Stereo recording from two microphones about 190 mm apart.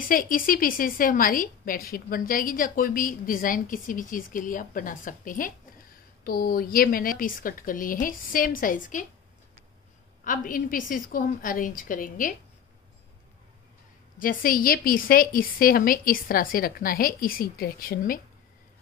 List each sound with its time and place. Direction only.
0.0 s a woman's voice: 45° left (ahead or behind)
10.2 s a woman's voice: 45° left (ahead or behind)
14.1 s a woman's voice: 45° left (ahead or behind)